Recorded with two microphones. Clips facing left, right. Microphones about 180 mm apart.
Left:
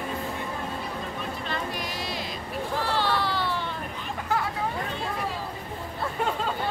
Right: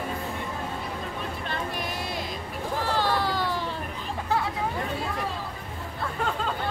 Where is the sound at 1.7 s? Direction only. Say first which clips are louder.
Right 1 dB; 55° right (ahead or behind).